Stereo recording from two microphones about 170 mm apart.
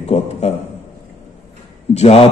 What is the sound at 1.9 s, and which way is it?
Speech, 40° left (ahead or behind).